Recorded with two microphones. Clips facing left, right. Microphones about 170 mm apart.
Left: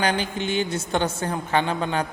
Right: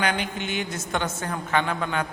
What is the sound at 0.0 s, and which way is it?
A man's voice, 35° left (ahead or behind).